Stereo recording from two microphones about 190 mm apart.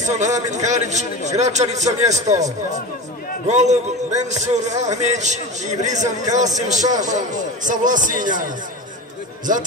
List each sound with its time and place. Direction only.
0.0 s a man's voice: 40° right (ahead or behind)